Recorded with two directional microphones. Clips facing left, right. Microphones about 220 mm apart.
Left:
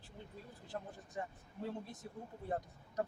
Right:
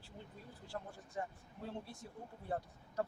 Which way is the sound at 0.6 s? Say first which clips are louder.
Left 1 dB; 20° left (ahead or behind).